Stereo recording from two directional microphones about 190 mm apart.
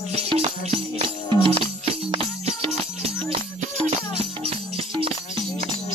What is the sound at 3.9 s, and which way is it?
Music, 30° right (ahead or behind).